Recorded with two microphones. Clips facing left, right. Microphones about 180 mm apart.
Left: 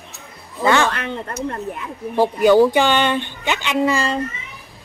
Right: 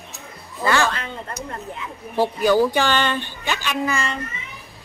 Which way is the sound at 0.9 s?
65° left (ahead or behind).